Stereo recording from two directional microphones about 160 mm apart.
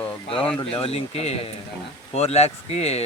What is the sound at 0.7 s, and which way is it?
Speech, 35° left (ahead or behind).